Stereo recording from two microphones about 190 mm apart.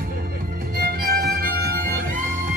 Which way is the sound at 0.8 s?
50° right (ahead or behind).